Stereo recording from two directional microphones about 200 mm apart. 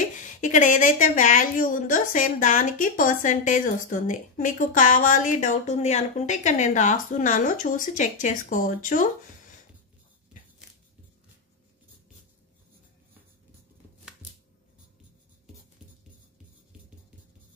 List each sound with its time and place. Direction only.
0.0 s speech: 40° left (ahead or behind)